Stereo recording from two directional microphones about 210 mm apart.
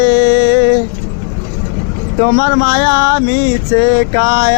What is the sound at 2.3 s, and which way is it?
Male singing, 55° left (ahead or behind).